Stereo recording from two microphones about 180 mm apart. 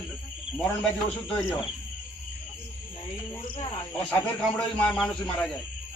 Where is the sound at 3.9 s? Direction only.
5° left (ahead or behind).